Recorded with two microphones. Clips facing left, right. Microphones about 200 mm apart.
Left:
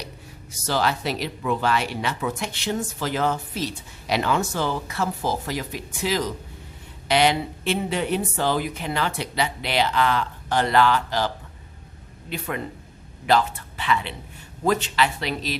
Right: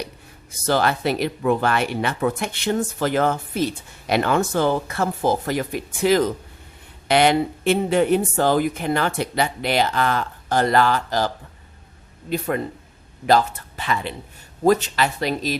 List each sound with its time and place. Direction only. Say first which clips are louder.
0.6 s speech: right 4 dB; 55° right (ahead or behind)
12.3 s speech: right 6 dB; 40° right (ahead or behind)